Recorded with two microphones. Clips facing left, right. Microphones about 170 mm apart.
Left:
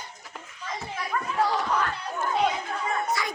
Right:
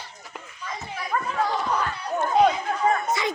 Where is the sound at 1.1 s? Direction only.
40° right (ahead or behind).